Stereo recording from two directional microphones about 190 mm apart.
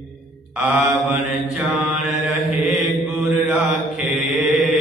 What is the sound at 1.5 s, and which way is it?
Mantra, 5° right (ahead or behind).